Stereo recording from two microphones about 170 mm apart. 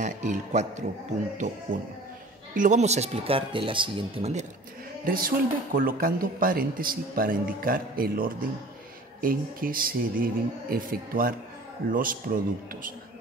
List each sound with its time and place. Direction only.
0.0 s a man's voice: 45° right (ahead or behind)
2.5 s speech: 45° right (ahead or behind)
5.0 s speech: 60° right (ahead or behind)